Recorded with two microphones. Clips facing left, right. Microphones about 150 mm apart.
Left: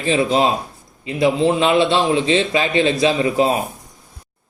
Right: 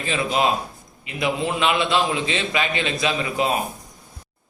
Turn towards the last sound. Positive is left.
turn(degrees=30)  # may be behind; listen again after turning